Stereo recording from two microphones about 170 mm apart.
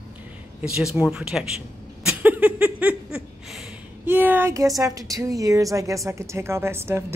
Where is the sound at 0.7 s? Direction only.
5° right (ahead or behind).